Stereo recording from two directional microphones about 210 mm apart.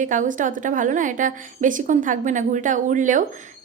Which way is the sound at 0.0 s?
35° right (ahead or behind).